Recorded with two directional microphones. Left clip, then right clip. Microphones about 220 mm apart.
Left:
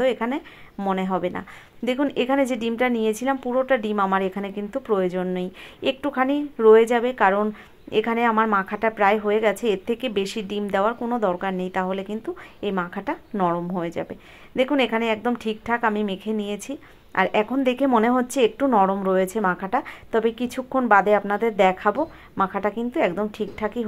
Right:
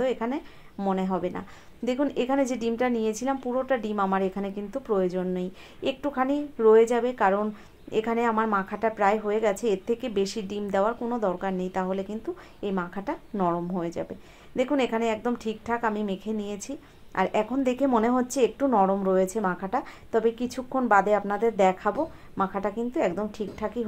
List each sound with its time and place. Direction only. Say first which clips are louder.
0.0 s a woman's voice: left 5 dB; 25° left (ahead or behind)